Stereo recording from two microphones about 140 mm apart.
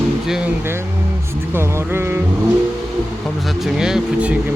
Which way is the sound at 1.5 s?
15° right (ahead or behind).